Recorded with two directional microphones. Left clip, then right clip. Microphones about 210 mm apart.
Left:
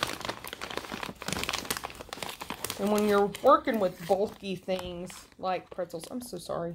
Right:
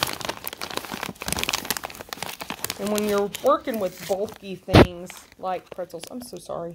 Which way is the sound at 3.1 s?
15° right (ahead or behind).